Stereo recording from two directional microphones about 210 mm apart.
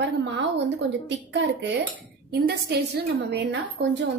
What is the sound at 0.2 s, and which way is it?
A woman's voice, 55° right (ahead or behind).